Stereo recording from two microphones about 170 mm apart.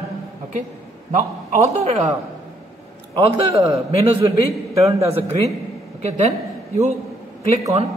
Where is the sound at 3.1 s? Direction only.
30° right (ahead or behind).